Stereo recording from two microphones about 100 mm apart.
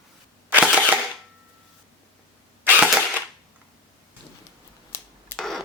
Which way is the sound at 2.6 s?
15° right (ahead or behind).